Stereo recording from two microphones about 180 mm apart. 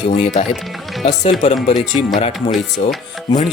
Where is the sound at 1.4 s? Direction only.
40° left (ahead or behind).